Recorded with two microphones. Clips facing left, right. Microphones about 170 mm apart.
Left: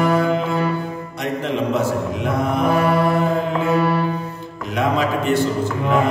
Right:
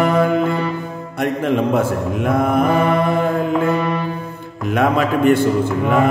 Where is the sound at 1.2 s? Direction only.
55° right (ahead or behind).